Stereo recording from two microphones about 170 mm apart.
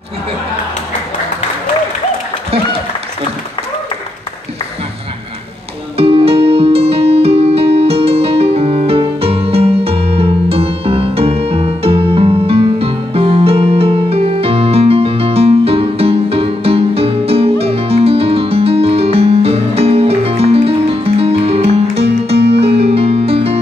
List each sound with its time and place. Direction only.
5.9 s music: 35° right (ahead or behind)